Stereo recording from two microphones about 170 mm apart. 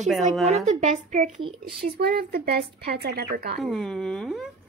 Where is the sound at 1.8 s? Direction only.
65° right (ahead or behind).